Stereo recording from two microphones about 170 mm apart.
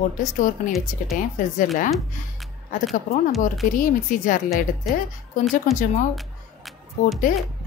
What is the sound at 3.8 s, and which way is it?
Speech, 50° left (ahead or behind).